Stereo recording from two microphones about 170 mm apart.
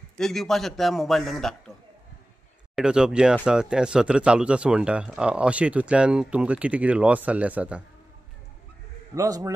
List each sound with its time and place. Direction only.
0.2 s a man's voice: centre (ahead or behind)
2.7 s a man's voice: 5° right (ahead or behind)
9.1 s a man's voice: 20° right (ahead or behind)